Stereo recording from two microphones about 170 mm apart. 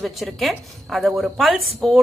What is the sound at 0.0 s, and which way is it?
A woman's voice, centre (ahead or behind).